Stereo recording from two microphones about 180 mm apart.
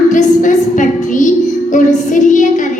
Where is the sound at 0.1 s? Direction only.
45° left (ahead or behind).